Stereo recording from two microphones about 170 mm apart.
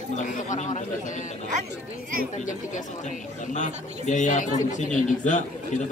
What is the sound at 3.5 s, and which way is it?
A man's voice, 45° left (ahead or behind).